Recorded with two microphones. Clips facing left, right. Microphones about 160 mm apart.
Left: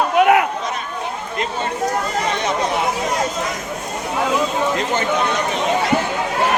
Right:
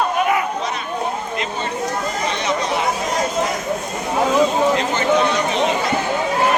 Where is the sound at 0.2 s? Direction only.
65° left (ahead or behind).